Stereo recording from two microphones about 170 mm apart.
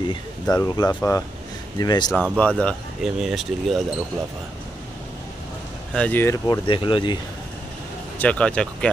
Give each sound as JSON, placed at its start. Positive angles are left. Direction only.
{"t": 0.1, "sound": "speech", "side_deg": 20}
{"t": 2.3, "sound": "speech", "side_deg": 5}
{"t": 5.9, "sound": "speech", "side_deg": 10}
{"t": 8.2, "sound": "speech", "side_deg": 5}